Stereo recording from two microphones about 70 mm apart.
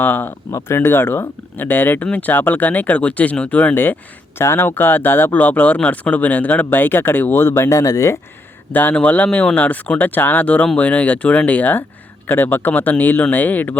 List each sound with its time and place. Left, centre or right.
0.0 s speech: left
4.4 s speech: left
8.7 s speech: left